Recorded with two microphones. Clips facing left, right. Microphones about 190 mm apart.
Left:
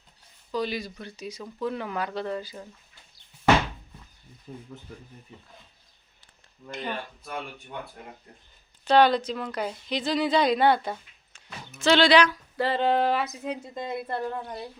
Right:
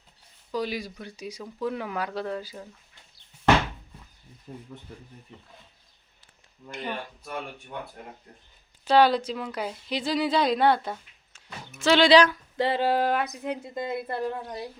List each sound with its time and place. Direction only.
0.5 s speech: 10° right (ahead or behind)
6.7 s speech: 10° right (ahead or behind)
8.8 s speech: 5° right (ahead or behind)
12.1 s speech: 45° right (ahead or behind)
12.5 s speech: 10° right (ahead or behind)